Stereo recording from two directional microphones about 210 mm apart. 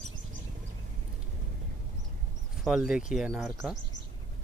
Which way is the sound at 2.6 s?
5° right (ahead or behind).